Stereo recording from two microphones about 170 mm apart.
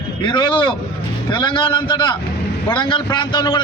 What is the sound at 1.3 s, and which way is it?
A man's voice, 30° left (ahead or behind).